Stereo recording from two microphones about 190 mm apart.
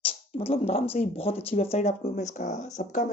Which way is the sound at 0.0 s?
30° left (ahead or behind).